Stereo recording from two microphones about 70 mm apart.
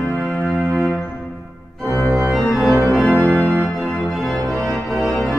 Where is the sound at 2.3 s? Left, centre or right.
Centre.